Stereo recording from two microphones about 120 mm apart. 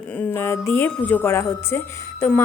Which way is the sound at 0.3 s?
20° left (ahead or behind).